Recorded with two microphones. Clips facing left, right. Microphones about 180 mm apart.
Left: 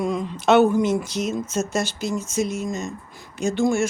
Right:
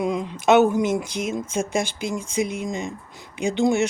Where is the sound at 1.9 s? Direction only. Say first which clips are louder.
Left 1 dB; 55° right (ahead or behind).